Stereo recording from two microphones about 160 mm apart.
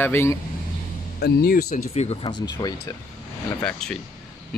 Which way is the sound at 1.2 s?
75° left (ahead or behind).